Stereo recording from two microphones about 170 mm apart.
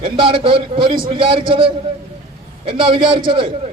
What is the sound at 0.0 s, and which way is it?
A man's voice, 30° right (ahead or behind).